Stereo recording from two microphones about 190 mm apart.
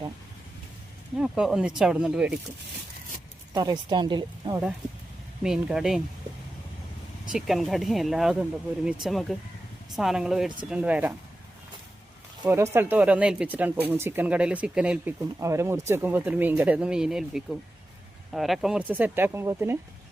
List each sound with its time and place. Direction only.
1.2 s speech: 5° right (ahead or behind)
3.5 s speech: 20° right (ahead or behind)
5.4 s speech: 5° right (ahead or behind)
7.3 s speech: centre (ahead or behind)
12.5 s speech: 15° right (ahead or behind)